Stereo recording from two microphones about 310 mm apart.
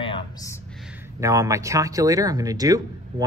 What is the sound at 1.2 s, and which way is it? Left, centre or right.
Speech, centre.